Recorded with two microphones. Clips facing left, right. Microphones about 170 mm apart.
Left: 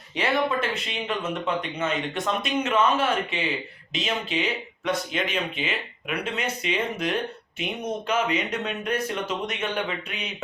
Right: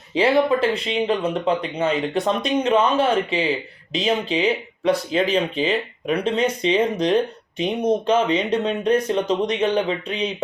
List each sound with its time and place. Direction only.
0.1 s speech: 30° right (ahead or behind)